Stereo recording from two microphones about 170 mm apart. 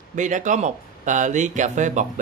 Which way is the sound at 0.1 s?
45° right (ahead or behind).